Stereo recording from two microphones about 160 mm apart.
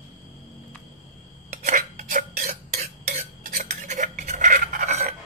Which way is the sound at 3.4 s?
60° right (ahead or behind).